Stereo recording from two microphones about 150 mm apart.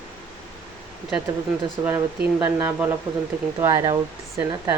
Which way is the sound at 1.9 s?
20° right (ahead or behind).